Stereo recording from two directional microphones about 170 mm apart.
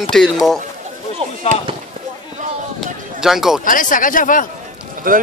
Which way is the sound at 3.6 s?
50° left (ahead or behind).